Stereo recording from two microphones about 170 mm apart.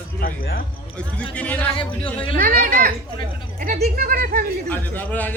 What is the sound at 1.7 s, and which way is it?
Speech, 30° left (ahead or behind).